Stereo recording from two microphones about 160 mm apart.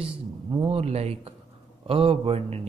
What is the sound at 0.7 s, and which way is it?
A man's voice, 40° right (ahead or behind).